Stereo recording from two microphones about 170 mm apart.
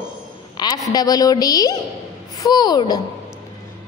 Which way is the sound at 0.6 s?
25° left (ahead or behind).